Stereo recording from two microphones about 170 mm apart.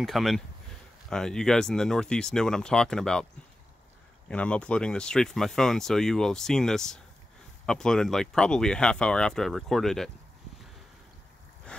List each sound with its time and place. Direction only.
0.0 s speech: centre (ahead or behind)
4.3 s speech: 5° left (ahead or behind)